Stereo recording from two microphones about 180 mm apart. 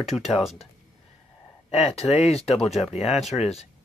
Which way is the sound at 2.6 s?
Centre (ahead or behind).